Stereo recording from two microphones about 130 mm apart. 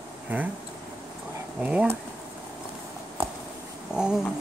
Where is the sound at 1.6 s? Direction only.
10° right (ahead or behind).